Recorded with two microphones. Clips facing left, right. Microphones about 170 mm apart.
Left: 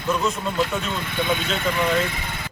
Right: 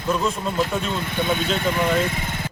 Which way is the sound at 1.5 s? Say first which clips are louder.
Right 1 dB; centre (ahead or behind).